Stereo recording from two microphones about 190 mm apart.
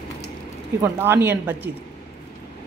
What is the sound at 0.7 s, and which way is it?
Speech, 10° right (ahead or behind).